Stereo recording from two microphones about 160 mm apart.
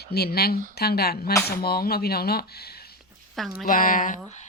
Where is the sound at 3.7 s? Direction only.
60° left (ahead or behind).